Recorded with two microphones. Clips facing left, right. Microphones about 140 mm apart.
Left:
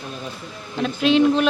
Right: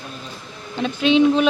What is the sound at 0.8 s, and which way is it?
Speech, centre (ahead or behind).